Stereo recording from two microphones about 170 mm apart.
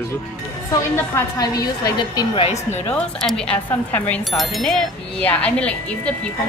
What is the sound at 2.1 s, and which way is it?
Speech, 30° left (ahead or behind).